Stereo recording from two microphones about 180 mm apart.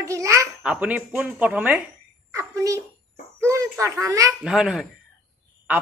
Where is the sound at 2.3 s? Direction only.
20° right (ahead or behind).